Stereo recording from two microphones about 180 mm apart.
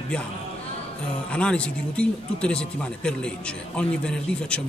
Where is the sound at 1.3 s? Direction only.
5° left (ahead or behind).